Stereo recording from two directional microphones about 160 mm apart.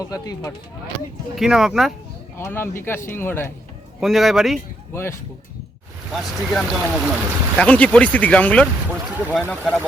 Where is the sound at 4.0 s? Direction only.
Centre (ahead or behind).